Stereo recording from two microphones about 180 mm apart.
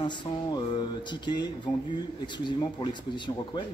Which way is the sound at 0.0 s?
25° left (ahead or behind).